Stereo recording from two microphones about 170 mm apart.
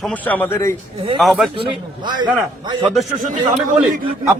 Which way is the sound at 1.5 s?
25° right (ahead or behind).